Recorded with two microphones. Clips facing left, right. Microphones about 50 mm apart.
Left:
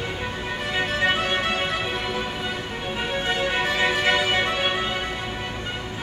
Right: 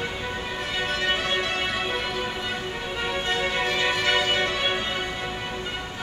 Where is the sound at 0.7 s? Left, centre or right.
Left.